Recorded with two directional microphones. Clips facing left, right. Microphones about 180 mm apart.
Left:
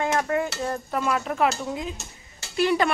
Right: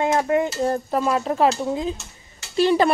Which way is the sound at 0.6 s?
30° right (ahead or behind).